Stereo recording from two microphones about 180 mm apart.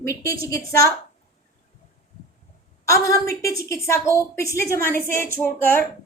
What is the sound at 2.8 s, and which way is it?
A woman's voice, 15° left (ahead or behind).